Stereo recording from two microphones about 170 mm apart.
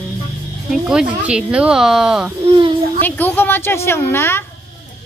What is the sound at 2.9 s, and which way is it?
A woman's voice, 10° left (ahead or behind).